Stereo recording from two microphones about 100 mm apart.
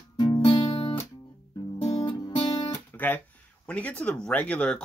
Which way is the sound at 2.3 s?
65° left (ahead or behind).